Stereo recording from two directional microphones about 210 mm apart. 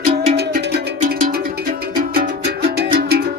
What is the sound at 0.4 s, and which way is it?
Music, 50° right (ahead or behind).